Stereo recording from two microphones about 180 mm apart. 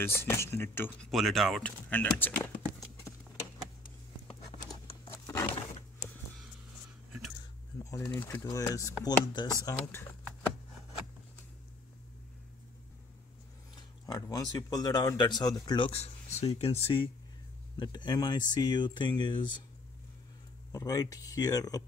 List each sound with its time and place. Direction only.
0.0 s speech: 15° left (ahead or behind)
1.1 s speech: centre (ahead or behind)
5.2 s a sound: 15° left (ahead or behind)
7.8 s pigeon: 20° left (ahead or behind)
8.1 s speech: 10° left (ahead or behind)
13.7 s speech: 20° left (ahead or behind)
20.7 s speech: 20° left (ahead or behind)